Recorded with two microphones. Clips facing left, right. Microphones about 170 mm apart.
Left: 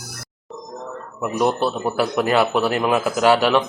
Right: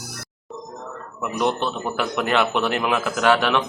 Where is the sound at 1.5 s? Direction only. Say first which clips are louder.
Left 4 dB; 35° left (ahead or behind).